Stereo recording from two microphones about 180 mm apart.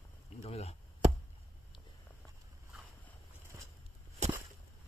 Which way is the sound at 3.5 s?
20° right (ahead or behind).